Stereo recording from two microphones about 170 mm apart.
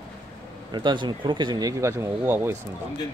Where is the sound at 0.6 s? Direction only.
25° right (ahead or behind).